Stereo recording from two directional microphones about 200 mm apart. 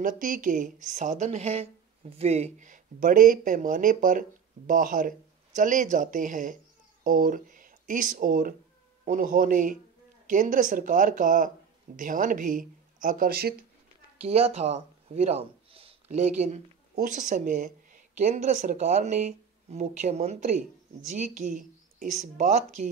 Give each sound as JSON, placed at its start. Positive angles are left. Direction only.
{"t": 0.0, "sound": "speech", "side_deg": -40}
{"t": 14.2, "sound": "speech", "side_deg": -30}